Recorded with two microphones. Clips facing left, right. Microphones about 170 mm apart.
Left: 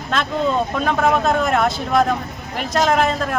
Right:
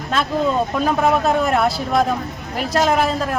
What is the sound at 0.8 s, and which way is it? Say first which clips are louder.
Speech: right 1 dB; 5° right (ahead or behind).